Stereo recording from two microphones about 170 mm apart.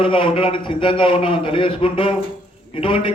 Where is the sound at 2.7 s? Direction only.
30° left (ahead or behind).